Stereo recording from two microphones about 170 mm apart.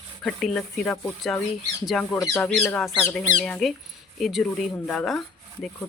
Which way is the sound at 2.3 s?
15° left (ahead or behind).